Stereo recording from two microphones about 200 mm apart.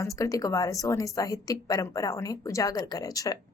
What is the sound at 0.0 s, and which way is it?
A woman's voice, 15° left (ahead or behind).